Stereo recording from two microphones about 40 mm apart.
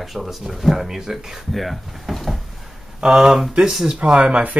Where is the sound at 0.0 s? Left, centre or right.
Centre.